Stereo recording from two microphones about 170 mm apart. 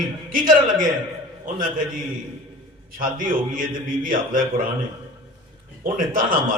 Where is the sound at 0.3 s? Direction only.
55° right (ahead or behind).